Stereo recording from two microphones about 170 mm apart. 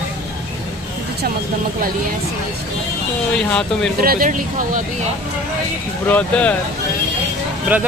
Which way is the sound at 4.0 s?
55° right (ahead or behind).